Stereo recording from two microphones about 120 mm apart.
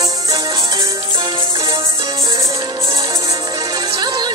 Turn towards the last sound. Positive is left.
turn(degrees=-35)  # may be behind; listen again after turning